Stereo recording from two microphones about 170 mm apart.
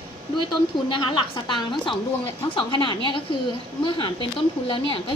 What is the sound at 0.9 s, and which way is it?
A woman's voice, 30° left (ahead or behind).